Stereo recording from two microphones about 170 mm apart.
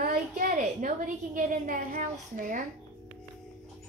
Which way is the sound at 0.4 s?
50° right (ahead or behind).